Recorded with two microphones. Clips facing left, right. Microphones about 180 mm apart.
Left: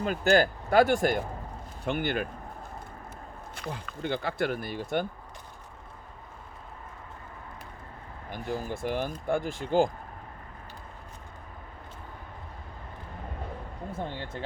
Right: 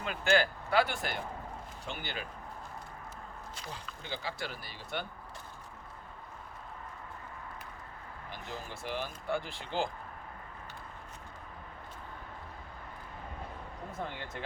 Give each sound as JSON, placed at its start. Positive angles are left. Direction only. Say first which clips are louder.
{"t": 0.0, "sound": "speech", "louder": "left 6 dB", "side_deg": 40}
{"t": 3.5, "sound": "speech", "louder": "left 10 dB", "side_deg": 55}
{"t": 8.3, "sound": "speech", "louder": "left 10 dB", "side_deg": 50}
{"t": 14.0, "sound": "speech", "louder": "left 4 dB", "side_deg": 30}